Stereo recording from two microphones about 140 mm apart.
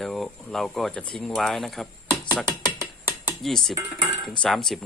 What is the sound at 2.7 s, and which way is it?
Ratchet, 15° right (ahead or behind).